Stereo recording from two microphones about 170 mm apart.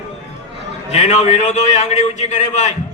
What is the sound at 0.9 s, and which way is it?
A man's voice, 40° left (ahead or behind).